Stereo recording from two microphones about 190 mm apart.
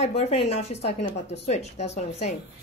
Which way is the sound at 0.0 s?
35° left (ahead or behind).